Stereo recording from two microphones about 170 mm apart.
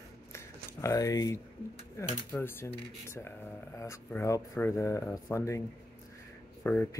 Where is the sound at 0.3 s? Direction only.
15° left (ahead or behind).